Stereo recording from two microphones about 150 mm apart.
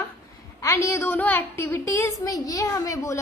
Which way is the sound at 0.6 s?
20° left (ahead or behind).